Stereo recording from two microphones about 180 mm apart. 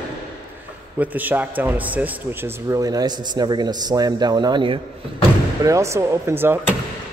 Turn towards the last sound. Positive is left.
turn(degrees=-10)  # may be behind; listen again after turning